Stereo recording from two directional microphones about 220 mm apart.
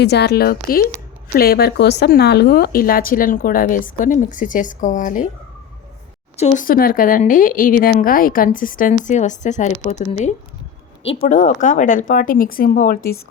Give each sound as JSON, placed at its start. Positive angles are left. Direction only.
{"t": 0.0, "sound": "speech", "side_deg": 50}
{"t": 6.3, "sound": "speech", "side_deg": 35}